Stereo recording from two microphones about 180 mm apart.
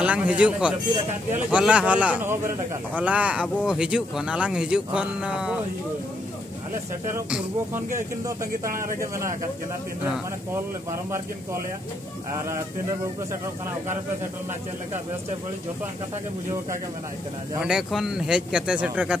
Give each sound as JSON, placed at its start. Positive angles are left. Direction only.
{"t": 0.0, "sound": "speech", "side_deg": -5}
{"t": 7.2, "sound": "speech", "side_deg": -5}
{"t": 8.6, "sound": "a man's voice", "side_deg": -50}
{"t": 10.5, "sound": "speech", "side_deg": -15}
{"t": 17.6, "sound": "speech", "side_deg": -5}